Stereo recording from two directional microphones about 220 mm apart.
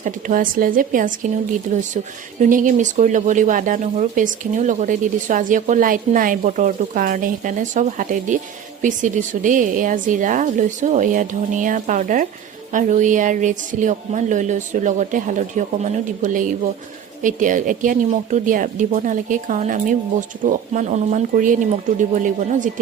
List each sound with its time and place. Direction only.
0.0 s speech: 35° right (ahead or behind)